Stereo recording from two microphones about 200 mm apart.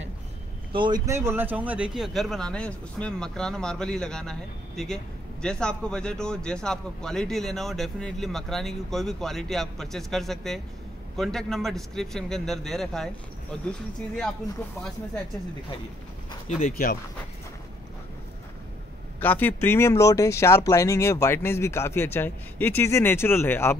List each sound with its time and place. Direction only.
0.7 s speech: 20° right (ahead or behind); by 13.1 s centre (ahead or behind)
16.6 s speech: 45° left (ahead or behind)
19.1 s speech: 10° left (ahead or behind)